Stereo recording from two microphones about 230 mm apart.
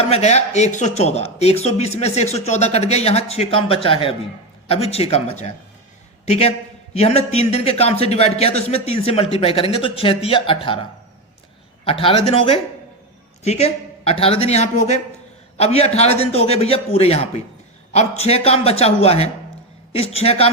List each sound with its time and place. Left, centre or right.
0.1 s a man's voice: left
11.9 s a man's voice: left
13.4 s a man's voice: left